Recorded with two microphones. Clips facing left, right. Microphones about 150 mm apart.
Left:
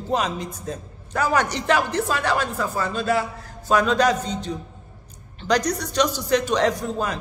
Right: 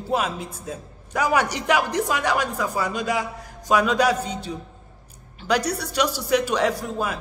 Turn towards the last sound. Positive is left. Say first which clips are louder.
# left 1 dB
turn(degrees=-10)  # may be behind; listen again after turning